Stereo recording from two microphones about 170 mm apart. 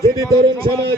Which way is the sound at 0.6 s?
30° right (ahead or behind).